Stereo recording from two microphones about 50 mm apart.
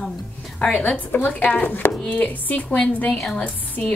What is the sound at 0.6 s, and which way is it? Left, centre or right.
A woman's voice, left.